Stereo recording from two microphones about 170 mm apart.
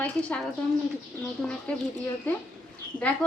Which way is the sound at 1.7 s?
10° left (ahead or behind).